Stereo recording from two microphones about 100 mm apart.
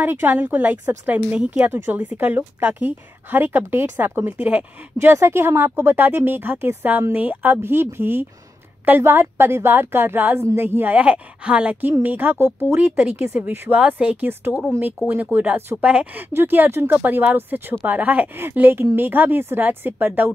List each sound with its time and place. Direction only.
0.0 s a woman's voice: 20° right (ahead or behind)